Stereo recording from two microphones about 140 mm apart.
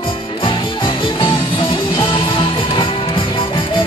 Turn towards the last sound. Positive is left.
turn(degrees=35)  # may be behind; listen again after turning